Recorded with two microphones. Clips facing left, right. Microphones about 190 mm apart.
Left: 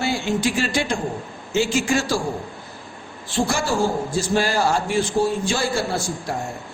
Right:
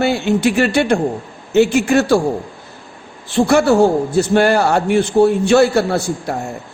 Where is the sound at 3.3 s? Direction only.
65° right (ahead or behind).